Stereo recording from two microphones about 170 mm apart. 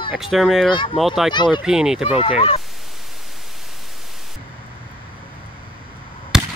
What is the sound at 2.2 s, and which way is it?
Speech, 35° left (ahead or behind).